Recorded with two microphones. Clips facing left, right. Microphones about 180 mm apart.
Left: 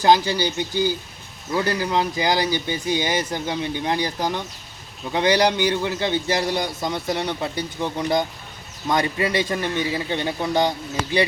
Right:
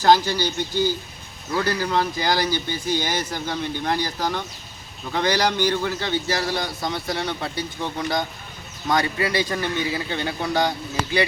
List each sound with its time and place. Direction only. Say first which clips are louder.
0.0 s a man's voice: even; 15° left (ahead or behind)